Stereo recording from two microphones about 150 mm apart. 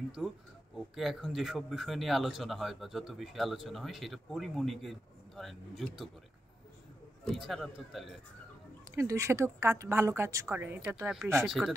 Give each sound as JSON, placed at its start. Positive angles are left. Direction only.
{"t": 0.2, "sound": "speech", "side_deg": -5}
{"t": 7.2, "sound": "speech", "side_deg": 0}
{"t": 8.9, "sound": "a woman's voice", "side_deg": -20}
{"t": 11.4, "sound": "speech", "side_deg": -5}